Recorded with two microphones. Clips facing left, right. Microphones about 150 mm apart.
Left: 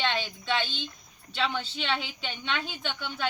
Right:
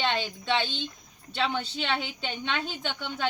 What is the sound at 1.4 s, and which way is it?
A woman's voice, 15° right (ahead or behind).